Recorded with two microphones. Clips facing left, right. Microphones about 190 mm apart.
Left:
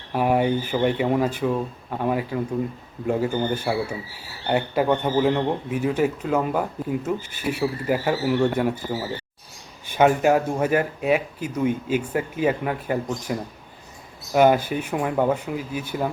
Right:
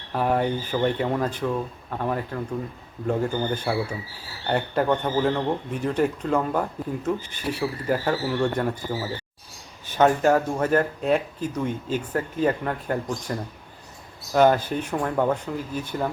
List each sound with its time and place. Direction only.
0.1 s speech: 10° left (ahead or behind)